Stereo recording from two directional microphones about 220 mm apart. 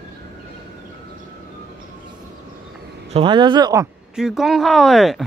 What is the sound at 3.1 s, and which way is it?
Speech, 20° right (ahead or behind).